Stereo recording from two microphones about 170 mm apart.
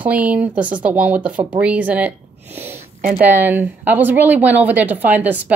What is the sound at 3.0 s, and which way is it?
Speech, 55° right (ahead or behind).